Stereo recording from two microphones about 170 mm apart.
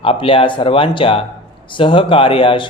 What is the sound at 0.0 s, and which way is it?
Speech, 30° left (ahead or behind).